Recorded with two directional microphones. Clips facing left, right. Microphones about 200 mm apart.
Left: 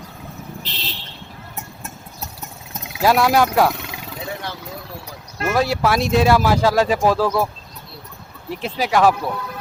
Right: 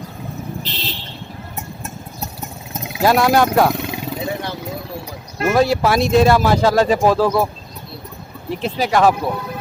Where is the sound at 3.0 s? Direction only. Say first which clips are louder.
Right 2 dB; 5° left (ahead or behind).